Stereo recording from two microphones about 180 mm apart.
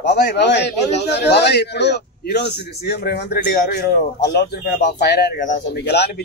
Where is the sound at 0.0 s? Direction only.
70° left (ahead or behind).